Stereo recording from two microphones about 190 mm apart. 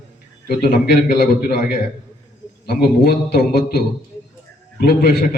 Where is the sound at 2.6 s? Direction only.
55° left (ahead or behind).